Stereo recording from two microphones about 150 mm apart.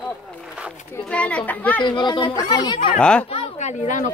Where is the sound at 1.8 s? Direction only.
30° left (ahead or behind).